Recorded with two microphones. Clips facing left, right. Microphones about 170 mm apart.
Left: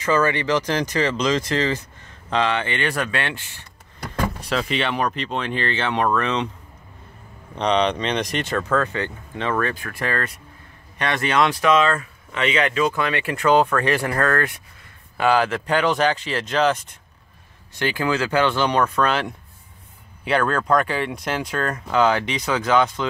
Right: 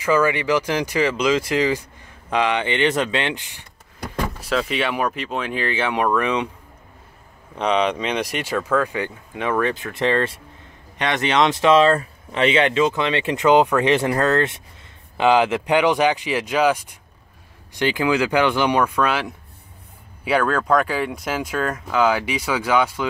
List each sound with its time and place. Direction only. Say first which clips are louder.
0.0 s speech: right 1 dB; 10° right (ahead or behind)
4.4 s speech: right 4 dB; centre (ahead or behind)
7.5 s speech: even; 5° right (ahead or behind)